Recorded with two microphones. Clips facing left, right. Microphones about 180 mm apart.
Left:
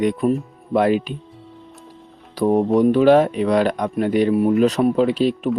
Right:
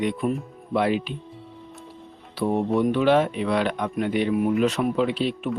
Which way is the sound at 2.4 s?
40° left (ahead or behind).